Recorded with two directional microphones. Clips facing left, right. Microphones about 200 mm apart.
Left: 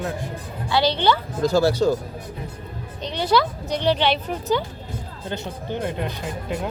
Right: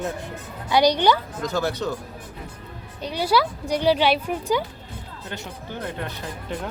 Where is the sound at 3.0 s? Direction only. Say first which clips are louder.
Left 1 dB; 10° right (ahead or behind).